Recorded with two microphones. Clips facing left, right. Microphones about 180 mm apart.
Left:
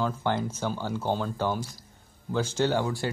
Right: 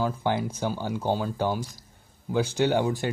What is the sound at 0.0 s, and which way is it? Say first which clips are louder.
Speech: right 1 dB; 10° right (ahead or behind).